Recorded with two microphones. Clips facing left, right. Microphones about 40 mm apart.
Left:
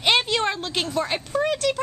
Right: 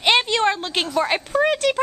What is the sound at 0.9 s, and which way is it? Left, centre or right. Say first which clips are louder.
Speech: right 6 dB; right.